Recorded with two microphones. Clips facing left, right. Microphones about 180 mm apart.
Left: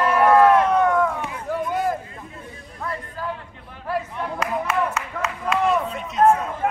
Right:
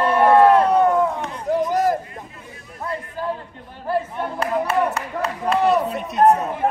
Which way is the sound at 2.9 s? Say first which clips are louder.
Right 4 dB; 30° right (ahead or behind).